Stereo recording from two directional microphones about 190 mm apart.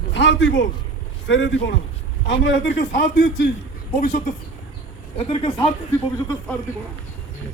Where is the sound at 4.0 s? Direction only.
45° left (ahead or behind).